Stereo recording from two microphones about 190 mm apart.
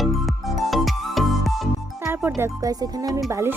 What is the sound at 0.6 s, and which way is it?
Music, centre (ahead or behind).